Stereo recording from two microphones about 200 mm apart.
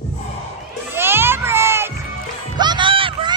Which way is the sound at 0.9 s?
10° right (ahead or behind).